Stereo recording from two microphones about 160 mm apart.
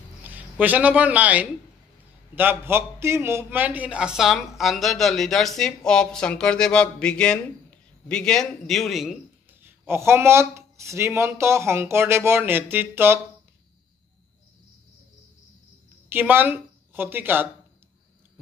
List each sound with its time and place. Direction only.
0.2 s a man's voice: 10° right (ahead or behind)
9.7 s speech: 15° right (ahead or behind)
16.1 s a woman's voice: 10° right (ahead or behind)